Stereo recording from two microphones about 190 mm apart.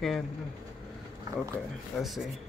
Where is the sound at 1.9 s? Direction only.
Centre (ahead or behind).